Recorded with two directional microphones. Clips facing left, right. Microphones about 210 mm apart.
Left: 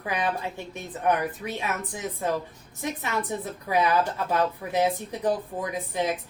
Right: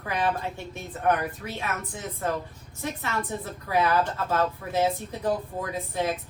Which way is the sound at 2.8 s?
15° left (ahead or behind).